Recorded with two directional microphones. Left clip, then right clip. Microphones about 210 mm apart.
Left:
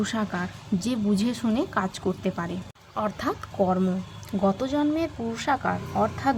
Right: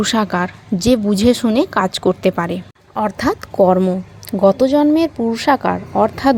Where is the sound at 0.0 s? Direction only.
40° right (ahead or behind).